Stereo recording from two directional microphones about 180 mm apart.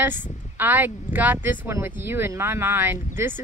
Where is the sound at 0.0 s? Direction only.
10° right (ahead or behind).